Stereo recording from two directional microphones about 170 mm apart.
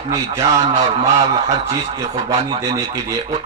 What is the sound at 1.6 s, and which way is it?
Speech, 40° right (ahead or behind).